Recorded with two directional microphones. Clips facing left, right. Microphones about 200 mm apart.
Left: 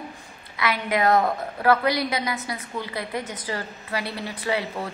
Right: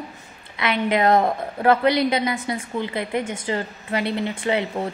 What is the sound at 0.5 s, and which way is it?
A woman's voice, 25° right (ahead or behind).